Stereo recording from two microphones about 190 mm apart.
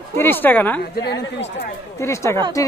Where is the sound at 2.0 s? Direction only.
15° left (ahead or behind).